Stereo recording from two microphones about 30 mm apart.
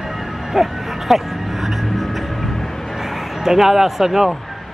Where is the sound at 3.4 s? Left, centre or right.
Centre.